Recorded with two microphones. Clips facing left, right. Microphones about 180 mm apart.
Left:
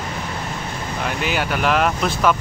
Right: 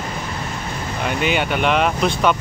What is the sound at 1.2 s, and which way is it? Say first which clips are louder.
Speech: right 2 dB; centre (ahead or behind).